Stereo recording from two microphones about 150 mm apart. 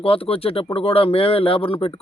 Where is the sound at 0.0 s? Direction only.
40° left (ahead or behind).